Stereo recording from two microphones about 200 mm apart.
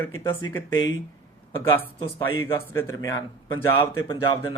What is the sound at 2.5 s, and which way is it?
Speech, 15° left (ahead or behind).